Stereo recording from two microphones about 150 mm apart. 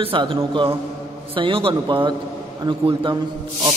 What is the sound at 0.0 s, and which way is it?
A man's voice, 35° right (ahead or behind).